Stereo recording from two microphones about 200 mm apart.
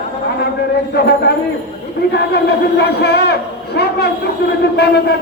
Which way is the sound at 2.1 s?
55° left (ahead or behind).